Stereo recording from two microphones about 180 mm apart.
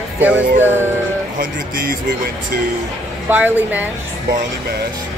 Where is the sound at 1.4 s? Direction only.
50° right (ahead or behind).